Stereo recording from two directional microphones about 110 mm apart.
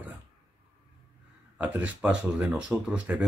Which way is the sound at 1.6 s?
15° right (ahead or behind).